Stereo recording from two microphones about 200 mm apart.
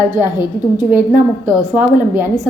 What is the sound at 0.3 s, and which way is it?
A woman's voice, 10° right (ahead or behind).